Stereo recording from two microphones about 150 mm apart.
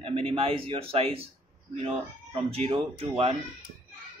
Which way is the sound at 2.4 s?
40° right (ahead or behind).